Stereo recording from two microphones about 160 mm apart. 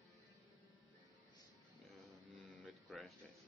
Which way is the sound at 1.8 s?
Centre (ahead or behind).